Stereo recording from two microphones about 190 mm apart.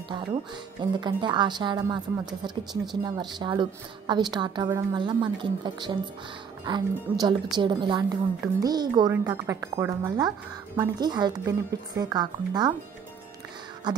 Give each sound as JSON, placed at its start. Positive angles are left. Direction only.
{"t": 0.7, "sound": "a woman's voice", "side_deg": -25}
{"t": 13.9, "sound": "music", "side_deg": -20}